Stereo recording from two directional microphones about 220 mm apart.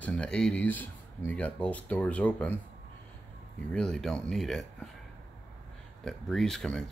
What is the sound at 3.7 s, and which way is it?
Speech, centre (ahead or behind).